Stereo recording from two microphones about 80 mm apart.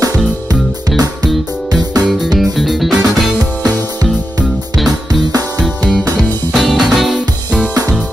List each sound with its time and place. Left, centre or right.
0.0 s music: right
2.3 s music: centre
3.6 s music: right
6.5 s music: centre